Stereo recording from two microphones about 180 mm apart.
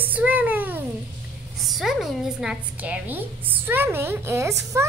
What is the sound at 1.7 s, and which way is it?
A woman's voice, centre (ahead or behind).